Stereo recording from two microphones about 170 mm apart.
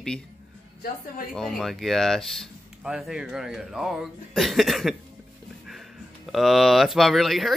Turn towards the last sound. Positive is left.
turn(degrees=0)  # may be behind; listen again after turning